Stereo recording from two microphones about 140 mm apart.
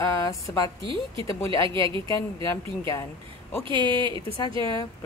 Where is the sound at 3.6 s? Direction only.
35° right (ahead or behind).